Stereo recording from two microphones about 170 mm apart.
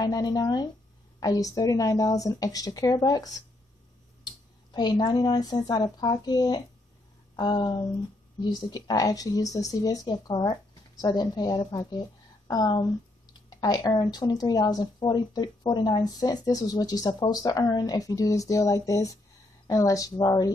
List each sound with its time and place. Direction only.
0.0 s a woman's voice: 25° left (ahead or behind)
4.7 s a woman's voice: 25° left (ahead or behind)